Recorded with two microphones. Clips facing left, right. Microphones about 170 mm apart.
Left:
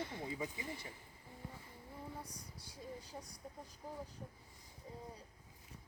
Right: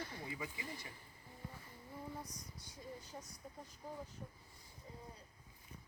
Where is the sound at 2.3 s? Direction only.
30° left (ahead or behind).